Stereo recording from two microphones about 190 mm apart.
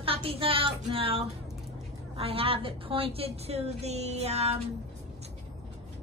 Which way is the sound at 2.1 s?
30° right (ahead or behind).